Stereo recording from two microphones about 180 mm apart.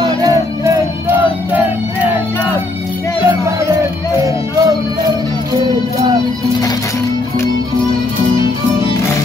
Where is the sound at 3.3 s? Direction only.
15° right (ahead or behind).